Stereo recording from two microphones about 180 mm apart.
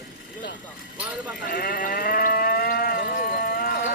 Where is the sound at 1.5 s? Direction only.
50° left (ahead or behind).